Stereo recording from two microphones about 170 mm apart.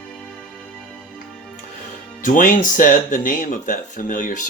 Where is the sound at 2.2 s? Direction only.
50° left (ahead or behind).